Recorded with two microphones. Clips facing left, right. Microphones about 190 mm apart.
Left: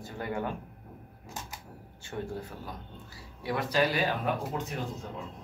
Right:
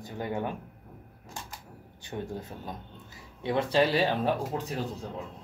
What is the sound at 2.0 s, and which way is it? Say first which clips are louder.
Speech: even; 20° right (ahead or behind).